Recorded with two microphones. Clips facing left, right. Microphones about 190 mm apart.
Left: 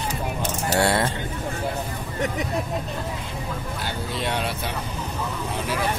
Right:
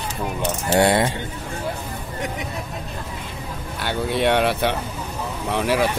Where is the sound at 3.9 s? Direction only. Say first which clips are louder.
Right 10 dB; 65° right (ahead or behind).